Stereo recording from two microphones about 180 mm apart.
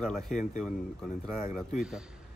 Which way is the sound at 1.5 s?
Centre (ahead or behind).